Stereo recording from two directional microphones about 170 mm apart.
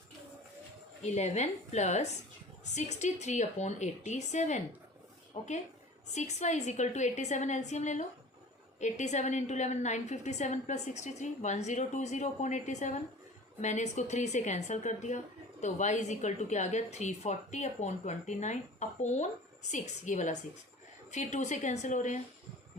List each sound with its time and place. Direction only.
1.0 s a woman's voice: 40° left (ahead or behind)